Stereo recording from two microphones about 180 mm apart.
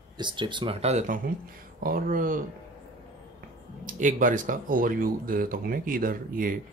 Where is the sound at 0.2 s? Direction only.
25° right (ahead or behind); by 2.4 s 50° right (ahead or behind).